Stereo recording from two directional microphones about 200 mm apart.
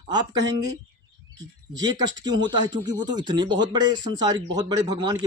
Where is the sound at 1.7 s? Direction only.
20° right (ahead or behind).